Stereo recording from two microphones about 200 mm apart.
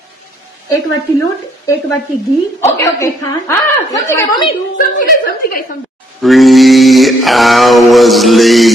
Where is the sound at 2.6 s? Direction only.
15° left (ahead or behind).